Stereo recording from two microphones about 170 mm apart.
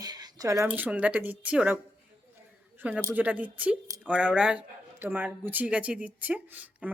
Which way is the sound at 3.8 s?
20° right (ahead or behind).